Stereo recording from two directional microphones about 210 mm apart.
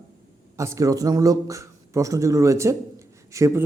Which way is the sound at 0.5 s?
15° right (ahead or behind).